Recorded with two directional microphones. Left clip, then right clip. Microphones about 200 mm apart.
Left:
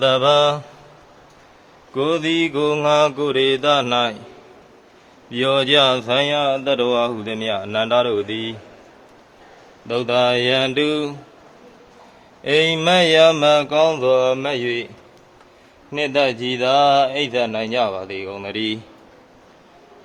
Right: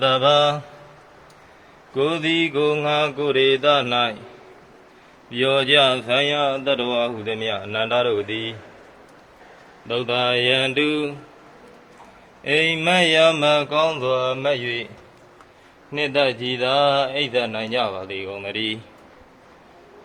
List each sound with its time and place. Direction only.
0.0 s speech: 25° left (ahead or behind)
2.0 s speech: 20° left (ahead or behind)
5.3 s speech: 25° left (ahead or behind)
9.8 s speech: 25° left (ahead or behind)
12.5 s speech: 30° left (ahead or behind)
15.9 s speech: 25° left (ahead or behind)